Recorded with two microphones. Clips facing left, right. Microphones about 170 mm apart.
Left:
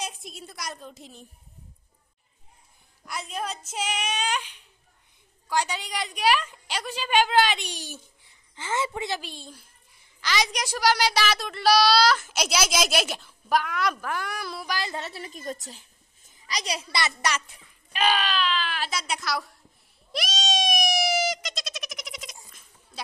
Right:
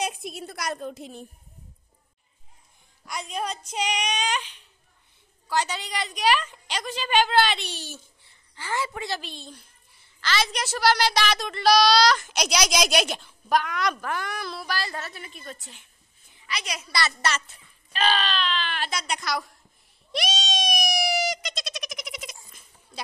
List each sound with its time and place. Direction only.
0.0 s a woman's voice: 65° right (ahead or behind)
3.1 s a child's voice: 5° left (ahead or behind); by 9.2 s 20° left (ahead or behind)
9.2 s a child's voice: 10° left (ahead or behind)
15.2 s a woman's voice: 40° left (ahead or behind)
16.9 s speech: 15° left (ahead or behind)
20.1 s a sound: centre (ahead or behind)